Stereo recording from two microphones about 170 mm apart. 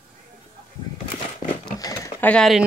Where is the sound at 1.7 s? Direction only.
20° left (ahead or behind).